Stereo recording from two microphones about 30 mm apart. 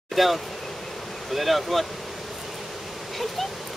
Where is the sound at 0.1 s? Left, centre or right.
Centre.